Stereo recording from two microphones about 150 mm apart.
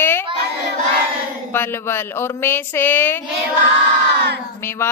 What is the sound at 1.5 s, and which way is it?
A woman's voice, 15° left (ahead or behind).